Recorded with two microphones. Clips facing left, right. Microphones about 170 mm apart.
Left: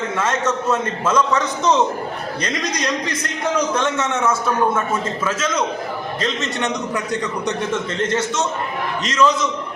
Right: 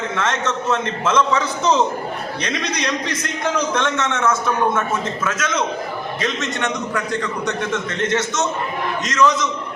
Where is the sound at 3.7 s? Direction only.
10° left (ahead or behind).